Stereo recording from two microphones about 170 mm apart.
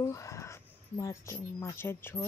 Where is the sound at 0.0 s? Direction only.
20° left (ahead or behind).